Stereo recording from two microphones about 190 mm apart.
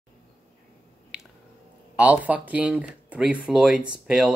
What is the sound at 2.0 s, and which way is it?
Speech, 10° right (ahead or behind).